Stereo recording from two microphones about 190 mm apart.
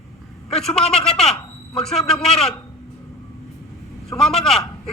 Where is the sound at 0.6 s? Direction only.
5° left (ahead or behind).